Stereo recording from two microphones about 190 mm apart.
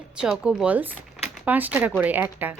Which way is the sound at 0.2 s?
5° right (ahead or behind).